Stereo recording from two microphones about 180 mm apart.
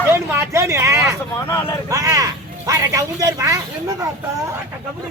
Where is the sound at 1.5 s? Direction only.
15° left (ahead or behind).